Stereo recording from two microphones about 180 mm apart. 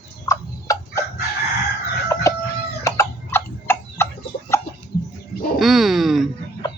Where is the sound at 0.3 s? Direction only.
15° left (ahead or behind).